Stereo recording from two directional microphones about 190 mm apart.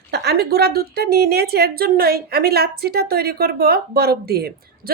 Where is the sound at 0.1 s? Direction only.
60° right (ahead or behind).